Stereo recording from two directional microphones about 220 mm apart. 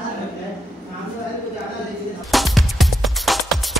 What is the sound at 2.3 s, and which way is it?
Music, centre (ahead or behind).